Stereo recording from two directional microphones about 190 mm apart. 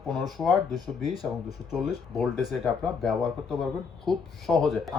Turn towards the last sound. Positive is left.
turn(degrees=0)  # may be behind; listen again after turning